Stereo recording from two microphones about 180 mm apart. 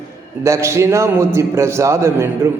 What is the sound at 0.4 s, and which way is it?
A man's voice, 15° right (ahead or behind).